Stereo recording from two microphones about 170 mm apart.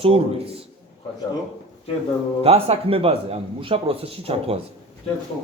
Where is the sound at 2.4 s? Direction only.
35° right (ahead or behind).